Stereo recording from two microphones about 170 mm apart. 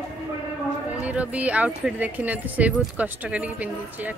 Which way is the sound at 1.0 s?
10° right (ahead or behind).